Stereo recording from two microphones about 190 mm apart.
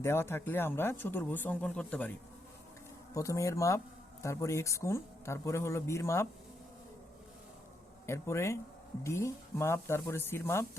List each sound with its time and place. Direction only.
0.0 s speech: 15° left (ahead or behind)
3.2 s speech: 15° left (ahead or behind)
8.0 s speech: 15° left (ahead or behind)